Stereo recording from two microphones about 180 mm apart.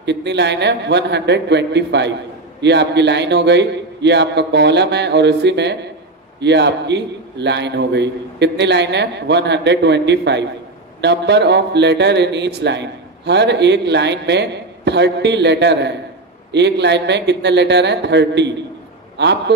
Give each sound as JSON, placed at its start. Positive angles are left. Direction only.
{"t": 0.0, "sound": "a man's voice", "side_deg": -75}